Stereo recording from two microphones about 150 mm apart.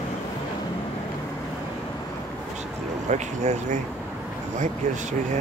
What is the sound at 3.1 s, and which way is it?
Speech, 50° right (ahead or behind).